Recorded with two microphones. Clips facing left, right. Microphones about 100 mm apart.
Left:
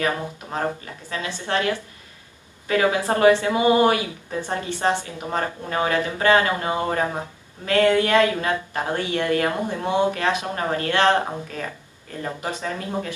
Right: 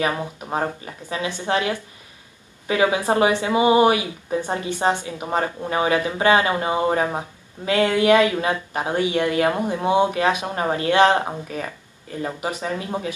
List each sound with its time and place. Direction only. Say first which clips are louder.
0.0 s speech: right 1 dB; 20° right (ahead or behind)